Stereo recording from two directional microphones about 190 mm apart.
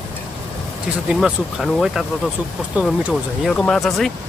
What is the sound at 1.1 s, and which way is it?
Speech, centre (ahead or behind).